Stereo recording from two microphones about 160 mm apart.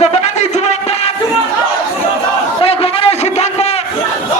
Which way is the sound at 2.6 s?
35° left (ahead or behind).